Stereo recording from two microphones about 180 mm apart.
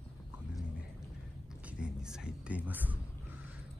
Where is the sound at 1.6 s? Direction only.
5° right (ahead or behind).